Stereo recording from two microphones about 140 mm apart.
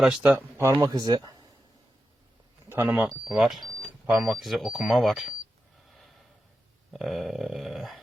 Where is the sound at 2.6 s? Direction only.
15° right (ahead or behind).